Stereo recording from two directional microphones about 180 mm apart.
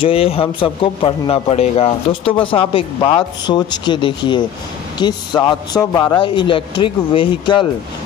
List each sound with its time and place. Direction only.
0.0 s speech: 30° left (ahead or behind)